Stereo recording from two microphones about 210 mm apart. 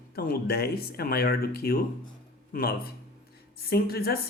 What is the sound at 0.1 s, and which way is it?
Speech, 45° left (ahead or behind).